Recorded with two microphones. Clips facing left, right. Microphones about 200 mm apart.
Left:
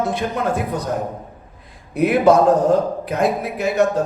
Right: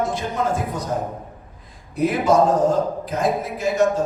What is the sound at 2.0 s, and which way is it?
A man's voice, 65° left (ahead or behind).